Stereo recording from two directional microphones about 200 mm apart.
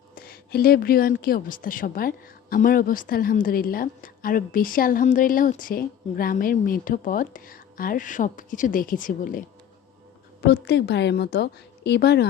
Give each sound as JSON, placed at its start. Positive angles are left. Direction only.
{"t": 0.1, "sound": "a sound", "side_deg": 45}
{"t": 1.2, "sound": "a woman's voice", "side_deg": 45}
{"t": 10.4, "sound": "a woman's voice", "side_deg": 55}